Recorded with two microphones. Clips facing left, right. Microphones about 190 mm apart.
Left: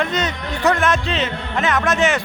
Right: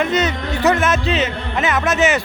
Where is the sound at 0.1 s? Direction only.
5° right (ahead or behind).